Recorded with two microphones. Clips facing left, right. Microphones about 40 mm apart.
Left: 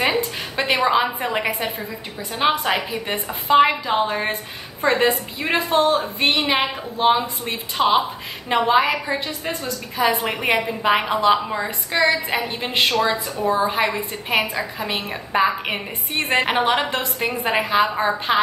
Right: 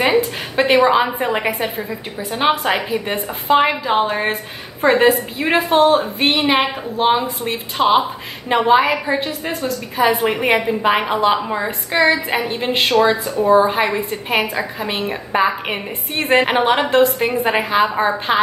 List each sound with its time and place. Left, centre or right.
0.6 s a woman's voice: centre
12.4 s a woman's voice: centre
12.9 s a woman's voice: centre